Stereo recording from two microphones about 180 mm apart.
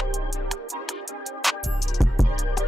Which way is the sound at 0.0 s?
Centre (ahead or behind).